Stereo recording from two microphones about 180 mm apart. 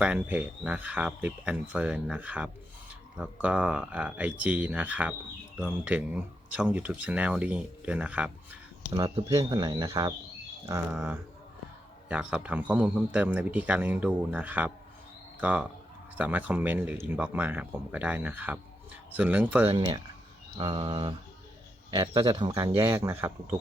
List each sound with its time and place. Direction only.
0.0 s speech: 5° right (ahead or behind)
8.9 s speech: 20° right (ahead or behind)
10.9 s speech: 10° right (ahead or behind)
19.7 s speech: 30° right (ahead or behind); by 23.6 s 10° right (ahead or behind)